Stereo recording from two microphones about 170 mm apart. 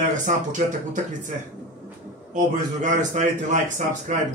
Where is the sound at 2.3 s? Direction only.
45° right (ahead or behind).